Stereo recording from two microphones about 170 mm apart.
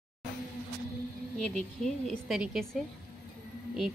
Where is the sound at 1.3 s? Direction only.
5° left (ahead or behind).